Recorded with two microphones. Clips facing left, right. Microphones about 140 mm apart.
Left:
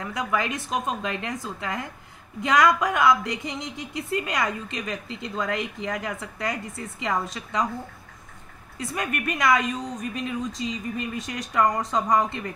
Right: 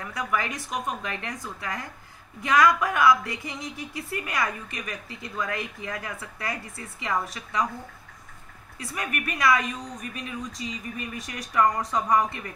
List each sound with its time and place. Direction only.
0.0 s speech: 20° left (ahead or behind)
8.7 s speech: 25° left (ahead or behind)